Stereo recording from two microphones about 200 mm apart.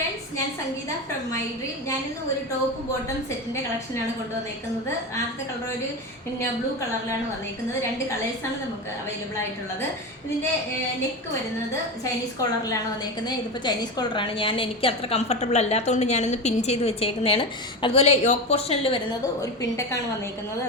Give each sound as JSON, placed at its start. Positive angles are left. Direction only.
{"t": 12.4, "sound": "a woman's voice", "side_deg": 15}
{"t": 19.4, "sound": "a woman's voice", "side_deg": 15}